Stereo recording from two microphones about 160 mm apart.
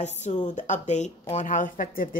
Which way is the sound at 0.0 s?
45° left (ahead or behind).